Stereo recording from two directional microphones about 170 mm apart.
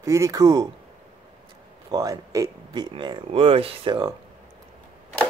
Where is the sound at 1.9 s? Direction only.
20° right (ahead or behind).